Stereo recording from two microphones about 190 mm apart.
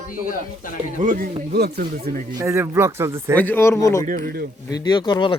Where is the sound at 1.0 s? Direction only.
45° right (ahead or behind).